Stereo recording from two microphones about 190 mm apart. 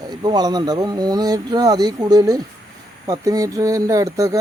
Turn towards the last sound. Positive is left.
turn(degrees=-15)  # may be behind; listen again after turning